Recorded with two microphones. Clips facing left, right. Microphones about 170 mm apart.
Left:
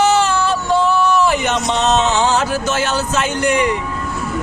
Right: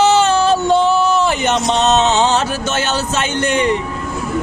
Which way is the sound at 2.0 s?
25° right (ahead or behind).